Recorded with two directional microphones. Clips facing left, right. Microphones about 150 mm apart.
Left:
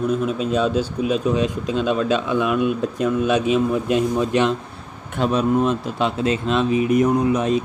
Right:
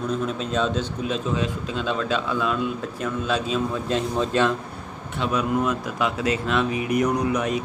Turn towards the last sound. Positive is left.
turn(degrees=25)  # may be behind; listen again after turning